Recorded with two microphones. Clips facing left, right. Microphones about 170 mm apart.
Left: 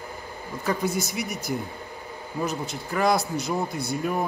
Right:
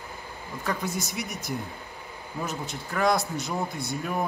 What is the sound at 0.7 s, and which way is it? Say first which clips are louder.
Speech: left 5 dB; centre (ahead or behind).